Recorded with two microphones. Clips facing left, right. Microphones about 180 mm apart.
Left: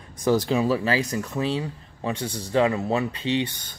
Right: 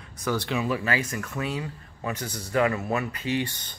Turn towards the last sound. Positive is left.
turn(degrees=25)  # may be behind; listen again after turning